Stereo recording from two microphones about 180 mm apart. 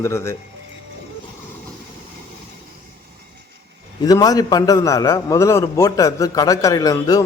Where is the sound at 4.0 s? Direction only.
20° left (ahead or behind).